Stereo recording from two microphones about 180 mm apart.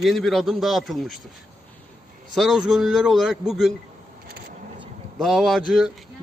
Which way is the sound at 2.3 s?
Centre (ahead or behind).